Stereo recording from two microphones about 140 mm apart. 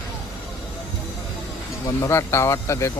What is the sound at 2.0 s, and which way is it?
Speech, 20° left (ahead or behind).